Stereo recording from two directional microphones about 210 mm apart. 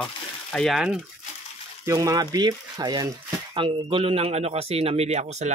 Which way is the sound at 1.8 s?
15° right (ahead or behind).